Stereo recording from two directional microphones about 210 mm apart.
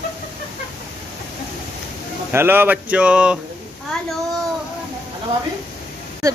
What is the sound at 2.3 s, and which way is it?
Speech, 10° right (ahead or behind).